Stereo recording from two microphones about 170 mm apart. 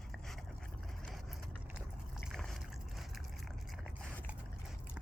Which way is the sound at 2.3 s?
Centre (ahead or behind).